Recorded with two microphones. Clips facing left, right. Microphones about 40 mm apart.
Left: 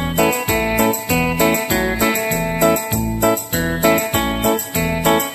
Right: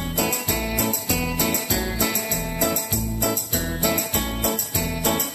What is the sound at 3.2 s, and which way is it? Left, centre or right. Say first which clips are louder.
Music: left 10 dB; left.